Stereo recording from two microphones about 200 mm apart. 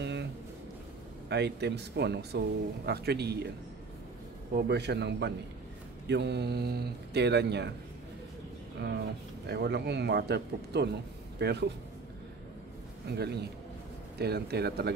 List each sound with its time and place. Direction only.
0.0 s a sound: 60° right (ahead or behind)
1.3 s speech: 55° right (ahead or behind)
4.6 s speech: 55° right (ahead or behind)
8.7 s speech: 55° right (ahead or behind)
13.1 s speech: 55° right (ahead or behind)